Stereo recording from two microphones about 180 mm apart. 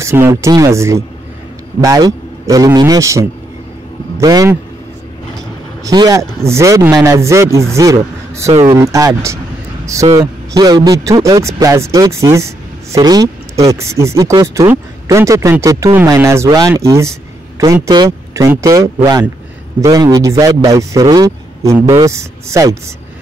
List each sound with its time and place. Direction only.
0.0 s a man's voice: 15° right (ahead or behind)
5.9 s a man's voice: 20° right (ahead or behind)